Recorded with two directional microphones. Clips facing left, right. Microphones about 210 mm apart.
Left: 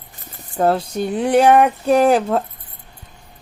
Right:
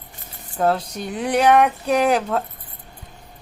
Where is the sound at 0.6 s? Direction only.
35° left (ahead or behind).